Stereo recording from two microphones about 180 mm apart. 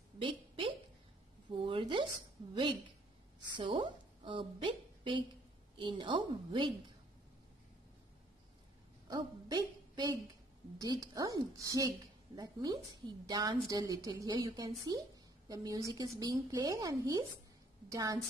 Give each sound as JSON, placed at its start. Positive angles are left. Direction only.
{"t": 0.2, "sound": "a sound", "side_deg": -30}
{"t": 2.5, "sound": "a woman's voice", "side_deg": -25}
{"t": 9.0, "sound": "a woman's voice", "side_deg": -25}